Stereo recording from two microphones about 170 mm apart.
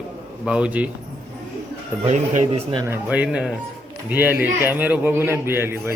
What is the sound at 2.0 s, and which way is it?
Speech, 45° right (ahead or behind).